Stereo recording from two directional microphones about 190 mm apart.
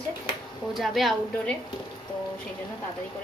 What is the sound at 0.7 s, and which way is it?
Speech, centre (ahead or behind).